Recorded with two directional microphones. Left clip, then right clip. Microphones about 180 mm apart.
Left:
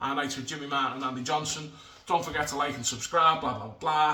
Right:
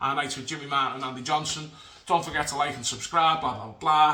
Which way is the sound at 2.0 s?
25° right (ahead or behind).